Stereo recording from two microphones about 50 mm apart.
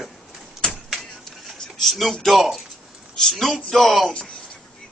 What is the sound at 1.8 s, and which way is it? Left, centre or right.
Speech, centre.